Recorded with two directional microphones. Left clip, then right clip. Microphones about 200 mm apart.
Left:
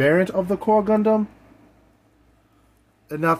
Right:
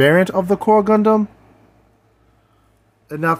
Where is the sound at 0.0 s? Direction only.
35° right (ahead or behind).